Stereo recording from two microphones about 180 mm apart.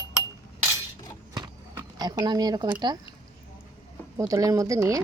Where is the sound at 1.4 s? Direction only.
20° right (ahead or behind).